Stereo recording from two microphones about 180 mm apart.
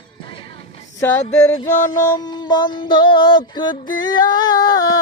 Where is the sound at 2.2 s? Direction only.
25° left (ahead or behind).